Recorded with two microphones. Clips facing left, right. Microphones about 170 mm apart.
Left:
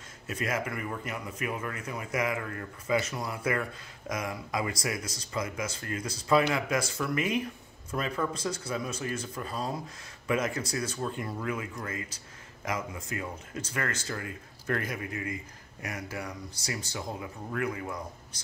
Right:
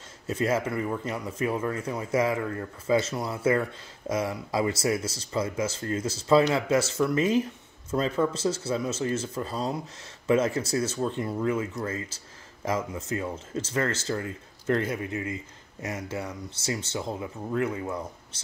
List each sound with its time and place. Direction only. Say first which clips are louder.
0.3 s speech: right 6 dB; 30° right (ahead or behind)